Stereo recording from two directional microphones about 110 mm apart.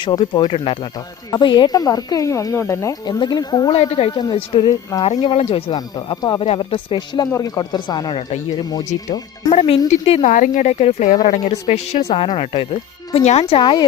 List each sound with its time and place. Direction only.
0.0 s speech: 45° left (ahead or behind)
0.5 s speech: 60° left (ahead or behind)
1.3 s speech: 45° left (ahead or behind); by 3.2 s 30° left (ahead or behind)
3.2 s speech: 40° left (ahead or behind)
3.8 s speech: 65° left (ahead or behind)
4.1 s speech: 40° left (ahead or behind)
5.0 s speech: 55° left (ahead or behind)
5.7 s speech: 40° left (ahead or behind)
7.3 s speech: 30° left (ahead or behind)
7.6 s speech: 40° left (ahead or behind)
9.5 s speech: 85° left; by 12.6 s 55° left (ahead or behind)
13.2 s speech: 75° left (ahead or behind)
13.6 s speech: 45° left (ahead or behind)